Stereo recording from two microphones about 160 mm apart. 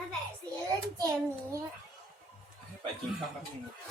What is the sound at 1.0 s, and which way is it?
Speech, 20° right (ahead or behind).